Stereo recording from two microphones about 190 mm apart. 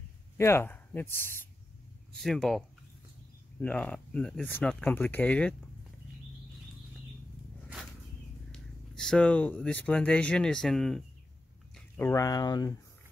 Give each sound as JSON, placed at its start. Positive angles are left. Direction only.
{"t": 0.4, "sound": "speech", "side_deg": 15}
{"t": 3.6, "sound": "speech", "side_deg": 5}
{"t": 8.5, "sound": "speech", "side_deg": 5}